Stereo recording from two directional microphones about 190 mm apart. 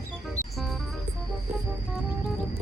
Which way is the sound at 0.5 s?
Centre (ahead or behind).